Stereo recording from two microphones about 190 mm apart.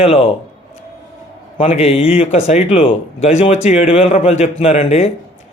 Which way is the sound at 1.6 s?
35° left (ahead or behind).